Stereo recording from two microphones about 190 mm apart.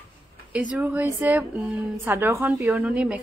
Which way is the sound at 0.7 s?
10° right (ahead or behind).